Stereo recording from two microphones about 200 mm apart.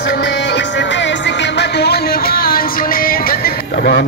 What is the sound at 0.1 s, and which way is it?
Music, 60° left (ahead or behind).